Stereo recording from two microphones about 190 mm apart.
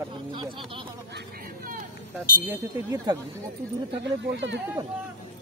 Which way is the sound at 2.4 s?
20° right (ahead or behind).